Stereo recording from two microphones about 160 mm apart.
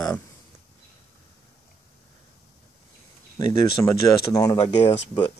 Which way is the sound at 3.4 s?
25° left (ahead or behind).